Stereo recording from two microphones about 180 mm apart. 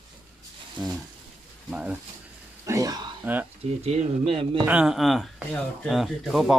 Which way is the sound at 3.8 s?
35° right (ahead or behind).